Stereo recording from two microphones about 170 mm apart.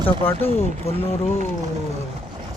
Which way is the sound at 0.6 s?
35° left (ahead or behind).